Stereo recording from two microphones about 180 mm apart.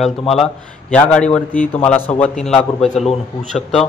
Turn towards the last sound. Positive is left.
turn(degrees=0)  # may be behind; listen again after turning